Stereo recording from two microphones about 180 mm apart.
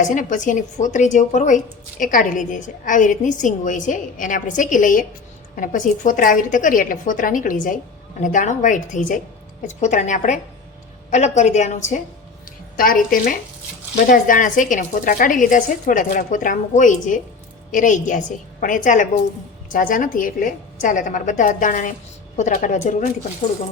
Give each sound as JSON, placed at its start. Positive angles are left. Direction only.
{"t": 0.0, "sound": "a woman's voice", "side_deg": 45}
{"t": 12.7, "sound": "a woman's voice", "side_deg": 50}